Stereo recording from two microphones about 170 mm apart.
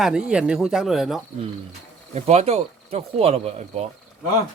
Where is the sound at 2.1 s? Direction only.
40° right (ahead or behind).